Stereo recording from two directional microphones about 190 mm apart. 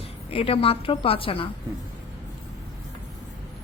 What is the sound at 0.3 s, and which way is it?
A woman's voice, 30° left (ahead or behind).